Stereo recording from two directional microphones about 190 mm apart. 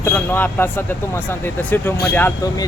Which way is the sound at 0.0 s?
10° left (ahead or behind).